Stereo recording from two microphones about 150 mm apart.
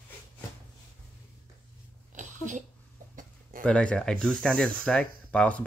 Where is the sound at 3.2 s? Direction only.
65° right (ahead or behind).